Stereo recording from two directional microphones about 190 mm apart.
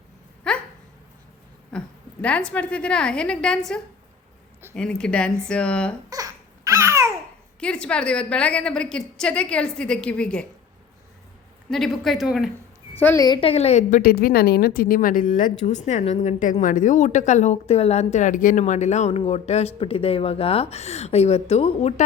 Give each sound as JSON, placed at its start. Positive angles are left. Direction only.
{"t": 0.4, "sound": "a sound", "side_deg": 5}
{"t": 1.7, "sound": "a woman's voice", "side_deg": 5}
{"t": 6.1, "sound": "babbling", "side_deg": -20}
{"t": 7.6, "sound": "a woman's voice", "side_deg": 5}
{"t": 11.7, "sound": "a woman's voice", "side_deg": 0}
{"t": 13.0, "sound": "a woman's voice", "side_deg": 10}
{"t": 13.2, "sound": "a woman's voice", "side_deg": 25}